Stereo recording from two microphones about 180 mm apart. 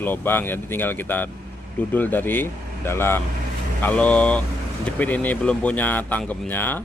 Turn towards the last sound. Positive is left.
turn(degrees=10)  # may be behind; listen again after turning